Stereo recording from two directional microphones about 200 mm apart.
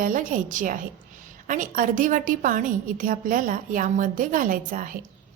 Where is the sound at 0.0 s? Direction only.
40° right (ahead or behind).